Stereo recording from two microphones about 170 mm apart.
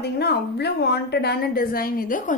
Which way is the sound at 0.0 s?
75° left (ahead or behind).